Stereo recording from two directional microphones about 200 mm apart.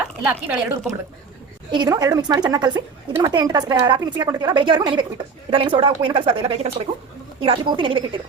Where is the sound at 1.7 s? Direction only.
20° right (ahead or behind).